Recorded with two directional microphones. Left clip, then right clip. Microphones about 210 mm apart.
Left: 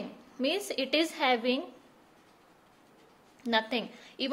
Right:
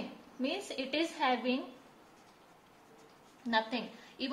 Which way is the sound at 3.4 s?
50° left (ahead or behind).